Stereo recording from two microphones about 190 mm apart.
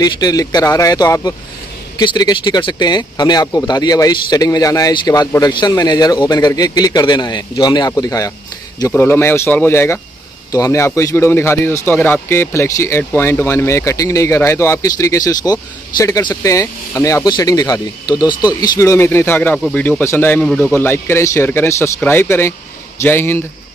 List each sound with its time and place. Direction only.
0.0 s speech: 20° left (ahead or behind)